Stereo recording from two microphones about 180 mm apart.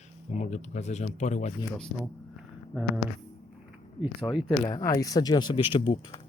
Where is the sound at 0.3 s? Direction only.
40° left (ahead or behind).